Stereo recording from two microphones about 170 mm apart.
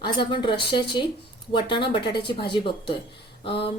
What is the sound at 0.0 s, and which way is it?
A woman's voice, 30° left (ahead or behind).